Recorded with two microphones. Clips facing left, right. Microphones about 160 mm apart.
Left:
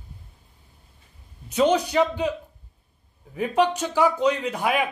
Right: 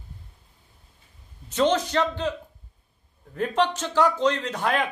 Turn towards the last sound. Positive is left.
turn(degrees=10)  # may be behind; listen again after turning